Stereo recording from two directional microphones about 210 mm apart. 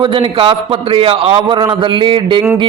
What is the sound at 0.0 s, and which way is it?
A man's voice, 25° right (ahead or behind).